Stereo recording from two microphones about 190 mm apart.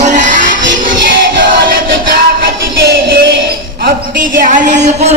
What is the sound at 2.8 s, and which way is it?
Music, 60° right (ahead or behind).